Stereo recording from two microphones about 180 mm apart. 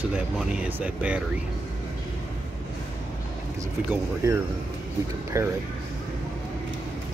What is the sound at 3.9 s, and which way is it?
Speech, 15° right (ahead or behind).